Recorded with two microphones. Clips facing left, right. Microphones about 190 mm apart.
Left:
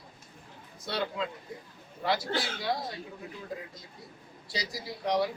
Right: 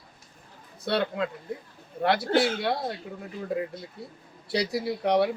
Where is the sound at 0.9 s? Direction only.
60° right (ahead or behind).